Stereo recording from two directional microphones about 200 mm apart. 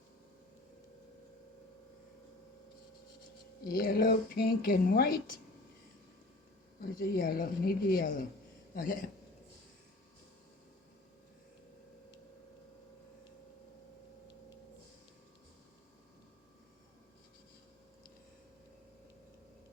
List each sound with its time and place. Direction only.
3.7 s a woman's voice: 45° left (ahead or behind)
7.0 s a woman's voice: 45° left (ahead or behind)